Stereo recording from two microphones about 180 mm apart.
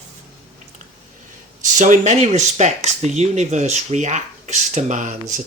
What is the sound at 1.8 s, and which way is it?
Speech, 40° right (ahead or behind).